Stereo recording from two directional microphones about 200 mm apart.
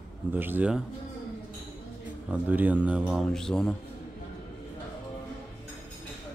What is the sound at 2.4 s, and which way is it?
A man's voice, 10° right (ahead or behind).